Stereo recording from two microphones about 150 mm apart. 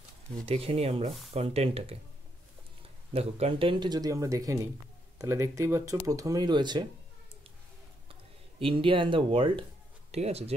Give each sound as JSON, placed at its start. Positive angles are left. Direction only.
{"t": 0.5, "sound": "speech", "side_deg": -40}
{"t": 3.1, "sound": "speech", "side_deg": -40}
{"t": 8.1, "sound": "speech", "side_deg": -35}